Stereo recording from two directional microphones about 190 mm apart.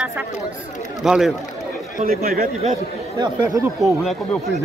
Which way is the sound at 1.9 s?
50° right (ahead or behind).